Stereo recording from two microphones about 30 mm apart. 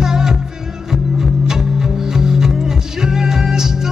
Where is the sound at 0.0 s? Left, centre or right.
Centre.